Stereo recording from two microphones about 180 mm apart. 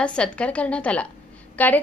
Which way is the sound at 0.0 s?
5° left (ahead or behind).